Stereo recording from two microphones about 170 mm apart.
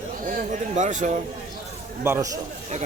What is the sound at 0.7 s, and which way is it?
Speech, 45° right (ahead or behind).